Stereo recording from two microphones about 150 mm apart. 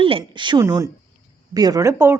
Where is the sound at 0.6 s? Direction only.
20° right (ahead or behind).